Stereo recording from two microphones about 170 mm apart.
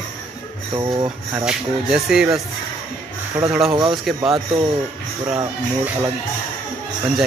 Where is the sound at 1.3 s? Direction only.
5° right (ahead or behind).